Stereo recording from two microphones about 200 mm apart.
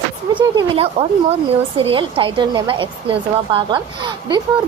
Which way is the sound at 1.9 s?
25° right (ahead or behind).